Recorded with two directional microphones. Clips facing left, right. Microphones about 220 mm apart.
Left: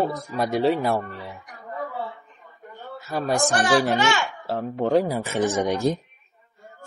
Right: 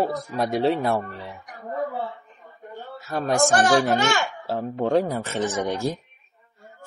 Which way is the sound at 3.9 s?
45° right (ahead or behind).